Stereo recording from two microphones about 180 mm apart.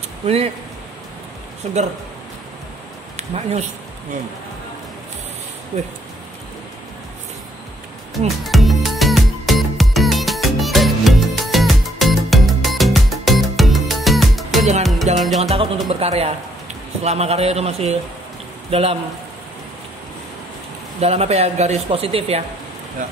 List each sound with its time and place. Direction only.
1.6 s speech: 35° right (ahead or behind)
3.2 s speech: 35° right (ahead or behind)
5.7 s speech: 35° right (ahead or behind)
8.5 s music: centre (ahead or behind)
15.3 s speech: 35° right (ahead or behind)
21.0 s speech: 35° right (ahead or behind)